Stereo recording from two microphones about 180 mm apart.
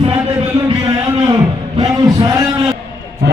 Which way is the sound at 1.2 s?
20° right (ahead or behind).